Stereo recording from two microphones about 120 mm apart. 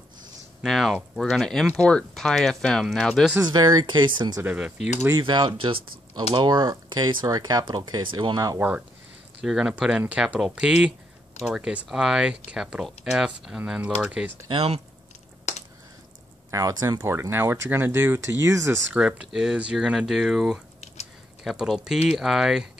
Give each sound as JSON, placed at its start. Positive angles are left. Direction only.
{"t": 0.6, "sound": "speech", "side_deg": 0}
{"t": 3.4, "sound": "speech", "side_deg": -35}
{"t": 4.4, "sound": "speech", "side_deg": -15}
{"t": 5.2, "sound": "speech", "side_deg": -40}
{"t": 8.5, "sound": "speech", "side_deg": -15}
{"t": 14.5, "sound": "speech", "side_deg": -55}
{"t": 15.5, "sound": "a sound", "side_deg": 65}
{"t": 16.4, "sound": "speech", "side_deg": -25}
{"t": 18.9, "sound": "speech", "side_deg": -10}